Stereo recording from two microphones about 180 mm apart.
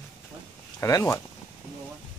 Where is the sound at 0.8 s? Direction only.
15° left (ahead or behind).